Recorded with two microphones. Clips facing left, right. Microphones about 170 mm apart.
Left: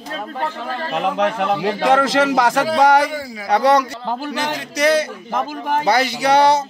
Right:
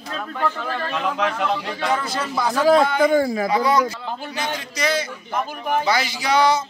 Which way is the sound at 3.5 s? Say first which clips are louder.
Left 4 dB; 75° left (ahead or behind).